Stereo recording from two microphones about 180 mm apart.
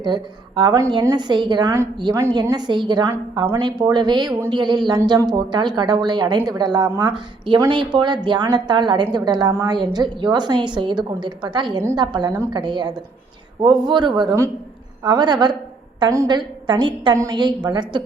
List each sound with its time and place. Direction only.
0.0 s a woman's voice: 25° right (ahead or behind)
7.1 s a woman's voice: 30° right (ahead or behind)